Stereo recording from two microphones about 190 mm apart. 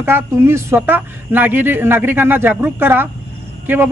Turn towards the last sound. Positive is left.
turn(degrees=-10)  # may be behind; listen again after turning